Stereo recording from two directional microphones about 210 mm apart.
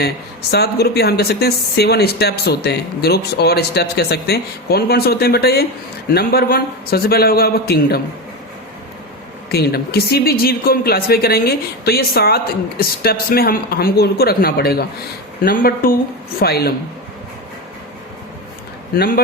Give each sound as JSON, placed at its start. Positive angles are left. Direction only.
{"t": 0.5, "sound": "speech", "side_deg": 50}
{"t": 9.5, "sound": "speech", "side_deg": 50}
{"t": 18.9, "sound": "speech", "side_deg": 45}